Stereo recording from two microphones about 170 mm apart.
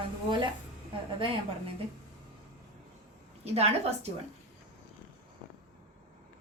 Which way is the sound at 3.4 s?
40° right (ahead or behind).